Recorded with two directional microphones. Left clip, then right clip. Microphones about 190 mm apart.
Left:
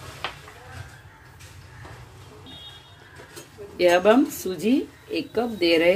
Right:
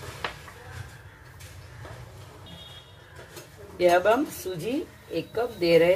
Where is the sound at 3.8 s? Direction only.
50° left (ahead or behind).